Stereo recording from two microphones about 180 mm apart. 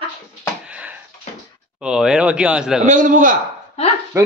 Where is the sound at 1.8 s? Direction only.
5° right (ahead or behind).